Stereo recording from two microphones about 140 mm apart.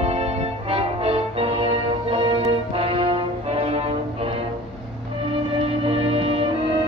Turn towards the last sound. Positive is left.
turn(degrees=-40)  # may be behind; listen again after turning